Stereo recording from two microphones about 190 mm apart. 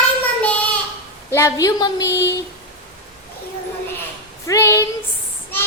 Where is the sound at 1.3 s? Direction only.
15° left (ahead or behind).